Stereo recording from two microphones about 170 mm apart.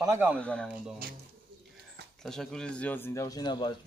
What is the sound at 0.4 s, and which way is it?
Speech, 5° left (ahead or behind).